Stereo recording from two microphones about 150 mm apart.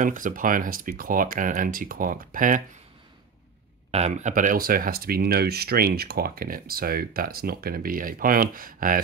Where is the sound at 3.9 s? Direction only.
45° right (ahead or behind); by 9.0 s 70° right (ahead or behind).